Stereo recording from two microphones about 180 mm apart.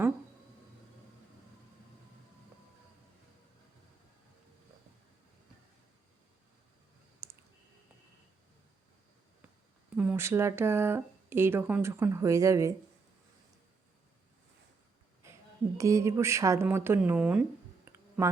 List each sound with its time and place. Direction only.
7.2 s clicking: 15° right (ahead or behind)
9.9 s speech: 5° right (ahead or behind)
15.8 s speech: 15° right (ahead or behind)
17.8 s clicking: 15° right (ahead or behind)